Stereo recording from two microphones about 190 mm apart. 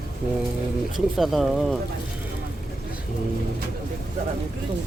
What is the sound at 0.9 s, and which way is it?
Speech, centre (ahead or behind).